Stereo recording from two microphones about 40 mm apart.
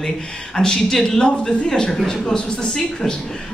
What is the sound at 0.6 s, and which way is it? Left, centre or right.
Speech, centre.